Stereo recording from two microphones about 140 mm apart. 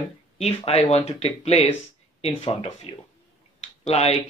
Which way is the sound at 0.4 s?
45° left (ahead or behind).